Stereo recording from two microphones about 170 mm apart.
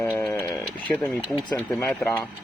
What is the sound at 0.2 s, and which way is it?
Sheep, 10° left (ahead or behind).